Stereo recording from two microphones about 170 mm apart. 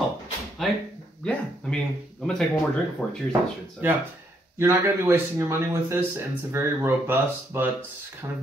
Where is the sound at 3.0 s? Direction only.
5° left (ahead or behind).